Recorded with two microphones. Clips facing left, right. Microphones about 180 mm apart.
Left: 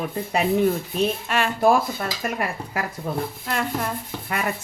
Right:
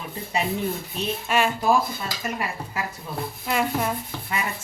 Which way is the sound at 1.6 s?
55° left (ahead or behind).